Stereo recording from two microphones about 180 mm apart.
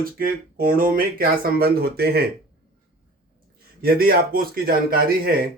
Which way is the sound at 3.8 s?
55° right (ahead or behind).